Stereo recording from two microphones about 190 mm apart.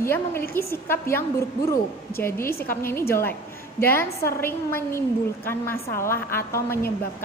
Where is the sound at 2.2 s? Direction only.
15° left (ahead or behind).